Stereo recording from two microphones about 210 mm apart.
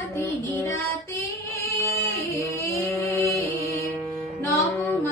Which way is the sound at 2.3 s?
15° left (ahead or behind).